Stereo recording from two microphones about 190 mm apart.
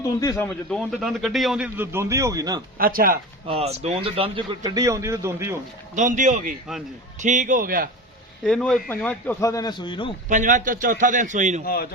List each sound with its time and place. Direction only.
0.0 s a man's voice: 20° left (ahead or behind); by 2.6 s 20° right (ahead or behind)
2.7 s a man's voice: 50° right (ahead or behind)
3.4 s speech: 30° right (ahead or behind)
4.6 s a man's voice: 15° right (ahead or behind)
5.9 s a man's voice: 40° right (ahead or behind)
8.4 s a man's voice: 5° left (ahead or behind); by 10.2 s 25° left (ahead or behind)
10.2 s a man's voice: 40° right (ahead or behind)
11.6 s speech: 50° left (ahead or behind)